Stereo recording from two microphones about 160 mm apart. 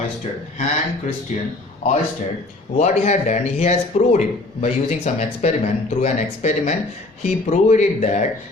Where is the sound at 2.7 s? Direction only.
45° left (ahead or behind).